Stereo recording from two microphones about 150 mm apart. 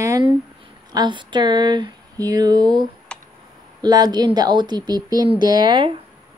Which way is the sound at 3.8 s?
25° right (ahead or behind).